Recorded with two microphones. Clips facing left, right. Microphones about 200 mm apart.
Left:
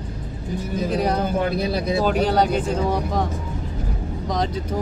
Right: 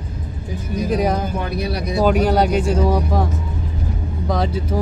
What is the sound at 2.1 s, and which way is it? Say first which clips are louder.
Speech: right 4 dB; 10° right (ahead or behind).